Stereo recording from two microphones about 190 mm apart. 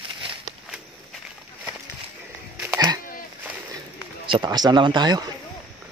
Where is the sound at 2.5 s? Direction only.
10° right (ahead or behind).